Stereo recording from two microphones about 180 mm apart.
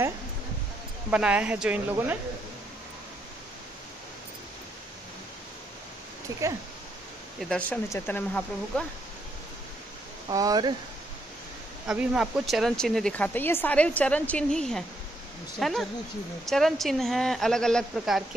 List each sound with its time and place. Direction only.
1.1 s speech: 5° right (ahead or behind)
7.3 s speech: centre (ahead or behind)
10.3 s speech: 20° right (ahead or behind)
11.9 s speech: 5° right (ahead or behind)